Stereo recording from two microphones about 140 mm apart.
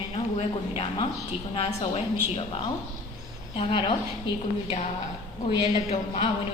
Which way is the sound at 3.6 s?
35° left (ahead or behind).